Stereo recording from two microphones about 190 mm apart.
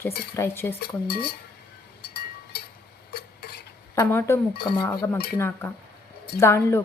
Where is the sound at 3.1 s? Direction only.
55° left (ahead or behind).